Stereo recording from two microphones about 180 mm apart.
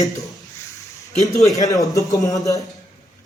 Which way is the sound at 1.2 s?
20° left (ahead or behind).